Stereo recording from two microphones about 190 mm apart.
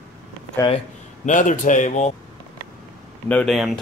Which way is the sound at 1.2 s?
40° left (ahead or behind).